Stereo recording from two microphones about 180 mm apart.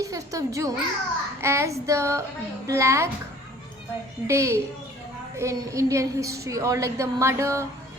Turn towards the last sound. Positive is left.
turn(degrees=-15)  # may be behind; listen again after turning